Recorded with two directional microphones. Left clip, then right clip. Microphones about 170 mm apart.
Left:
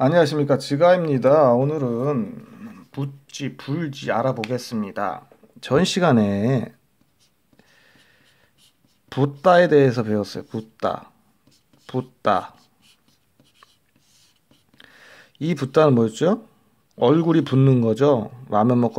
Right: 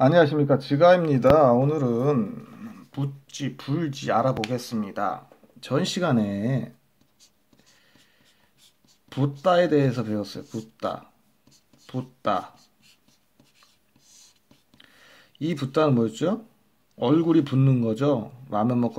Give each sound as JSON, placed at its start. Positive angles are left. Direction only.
{"t": 0.0, "sound": "speech", "side_deg": 20}
{"t": 2.4, "sound": "speech", "side_deg": 25}
{"t": 9.1, "sound": "speech", "side_deg": 45}
{"t": 14.8, "sound": "a sound", "side_deg": 40}
{"t": 16.9, "sound": "speech", "side_deg": 45}